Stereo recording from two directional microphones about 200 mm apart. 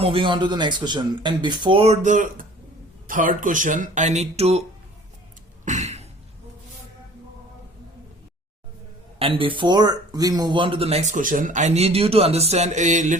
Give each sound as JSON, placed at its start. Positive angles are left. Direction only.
{"t": 0.0, "sound": "speech", "side_deg": -25}
{"t": 5.6, "sound": "a sound", "side_deg": -35}
{"t": 9.1, "sound": "speech", "side_deg": -30}